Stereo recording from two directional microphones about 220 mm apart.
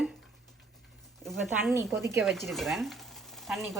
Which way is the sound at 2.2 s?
Centre (ahead or behind).